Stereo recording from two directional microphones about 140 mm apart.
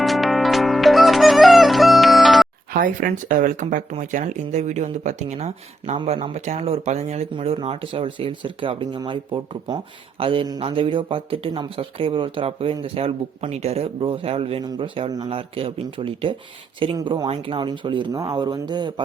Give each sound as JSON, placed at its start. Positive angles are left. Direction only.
{"t": 0.0, "sound": "music", "side_deg": 0}
{"t": 2.7, "sound": "speech", "side_deg": -80}